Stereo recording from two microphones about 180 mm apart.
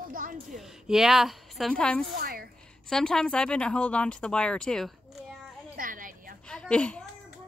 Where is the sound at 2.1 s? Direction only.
55° right (ahead or behind).